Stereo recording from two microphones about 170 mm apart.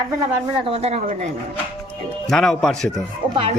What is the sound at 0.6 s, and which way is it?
Speech, 35° right (ahead or behind).